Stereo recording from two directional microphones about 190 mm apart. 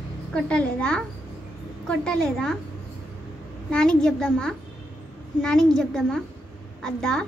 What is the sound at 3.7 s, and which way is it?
Speech, 5° left (ahead or behind).